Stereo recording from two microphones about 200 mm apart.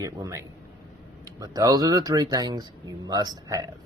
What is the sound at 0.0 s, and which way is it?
Speech, 15° right (ahead or behind).